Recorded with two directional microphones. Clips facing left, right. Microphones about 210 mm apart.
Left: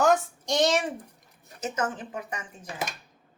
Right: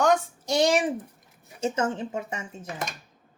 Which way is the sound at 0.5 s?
10° right (ahead or behind).